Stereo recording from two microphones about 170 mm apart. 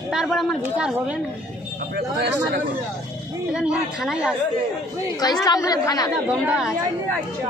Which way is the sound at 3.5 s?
5° right (ahead or behind).